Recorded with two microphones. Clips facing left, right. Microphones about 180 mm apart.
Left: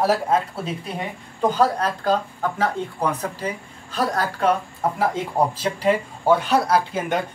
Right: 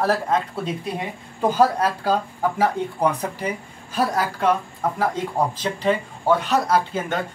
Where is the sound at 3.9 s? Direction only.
5° right (ahead or behind).